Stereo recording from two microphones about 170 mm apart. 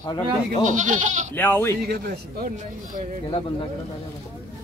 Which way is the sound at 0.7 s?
50° right (ahead or behind).